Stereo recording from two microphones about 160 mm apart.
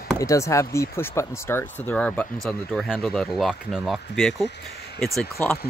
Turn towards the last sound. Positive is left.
turn(degrees=10)  # may be behind; listen again after turning